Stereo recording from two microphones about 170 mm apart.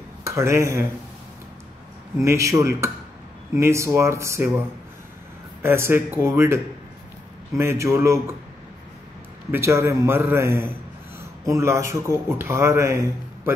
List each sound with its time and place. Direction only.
0.2 s speech: 15° right (ahead or behind)
2.1 s a man's voice: 15° right (ahead or behind)
9.5 s a man's voice: 15° right (ahead or behind)